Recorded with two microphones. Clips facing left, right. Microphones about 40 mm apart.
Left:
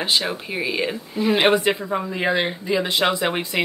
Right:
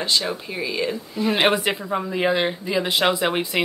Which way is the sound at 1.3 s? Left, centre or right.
Centre.